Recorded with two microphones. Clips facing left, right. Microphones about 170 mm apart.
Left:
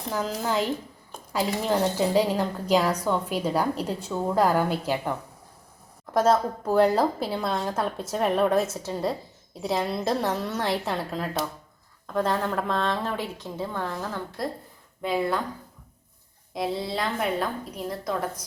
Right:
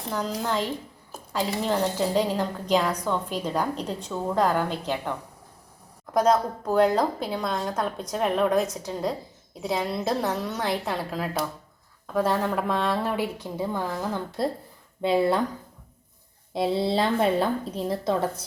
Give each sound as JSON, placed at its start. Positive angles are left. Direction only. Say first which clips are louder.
{"t": 0.1, "sound": "a woman's voice", "louder": "left 1 dB", "side_deg": 5}
{"t": 1.1, "sound": "a sound", "louder": "right 1 dB", "side_deg": -5}
{"t": 1.6, "sound": "a woman's voice", "louder": "left 1 dB", "side_deg": 5}
{"t": 6.1, "sound": "a woman's voice", "louder": "even", "side_deg": 5}
{"t": 15.0, "sound": "a woman's voice", "louder": "right 4 dB", "side_deg": -25}
{"t": 16.6, "sound": "a woman's voice", "louder": "right 5 dB", "side_deg": -25}